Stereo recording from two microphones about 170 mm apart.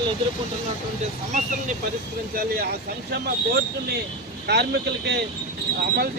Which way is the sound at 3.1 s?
70° right (ahead or behind).